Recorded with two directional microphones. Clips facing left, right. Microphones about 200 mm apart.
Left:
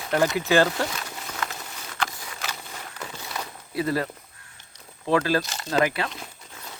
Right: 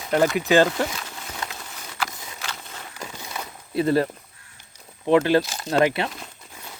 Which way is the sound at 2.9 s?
10° right (ahead or behind).